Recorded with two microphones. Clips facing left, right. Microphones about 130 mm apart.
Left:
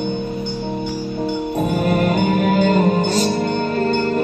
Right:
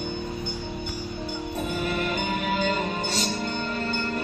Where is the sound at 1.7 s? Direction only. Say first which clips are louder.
Left 9 dB; 45° left (ahead or behind).